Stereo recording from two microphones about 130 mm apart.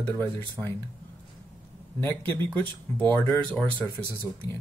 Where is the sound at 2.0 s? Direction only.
15° left (ahead or behind).